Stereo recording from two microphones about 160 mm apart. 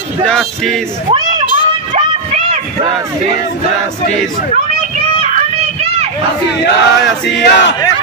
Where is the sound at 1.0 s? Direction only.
25° right (ahead or behind).